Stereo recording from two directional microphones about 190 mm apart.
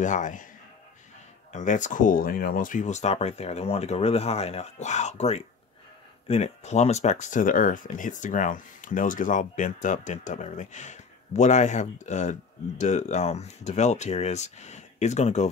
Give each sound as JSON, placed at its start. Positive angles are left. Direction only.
{"t": 0.0, "sound": "speech", "side_deg": 40}
{"t": 1.5, "sound": "speech", "side_deg": 40}